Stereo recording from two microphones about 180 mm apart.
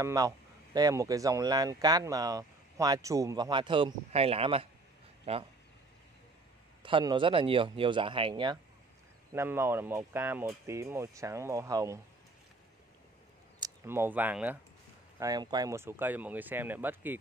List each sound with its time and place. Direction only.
0.0 s speech: 20° right (ahead or behind)
6.8 s speech: 25° right (ahead or behind)
9.3 s speech: 15° right (ahead or behind)
13.6 s speech: 15° right (ahead or behind)
15.1 s speech: 20° right (ahead or behind)